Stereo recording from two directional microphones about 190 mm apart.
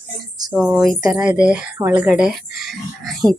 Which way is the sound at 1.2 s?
5° right (ahead or behind).